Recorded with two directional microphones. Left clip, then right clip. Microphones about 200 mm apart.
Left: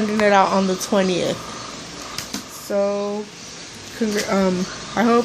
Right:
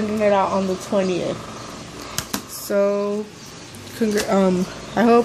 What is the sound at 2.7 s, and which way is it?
Speech, 15° right (ahead or behind).